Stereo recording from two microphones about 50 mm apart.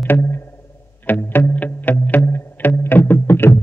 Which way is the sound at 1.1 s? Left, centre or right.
Left.